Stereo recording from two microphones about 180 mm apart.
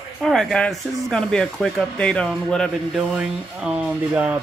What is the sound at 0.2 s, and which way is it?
Speech, centre (ahead or behind).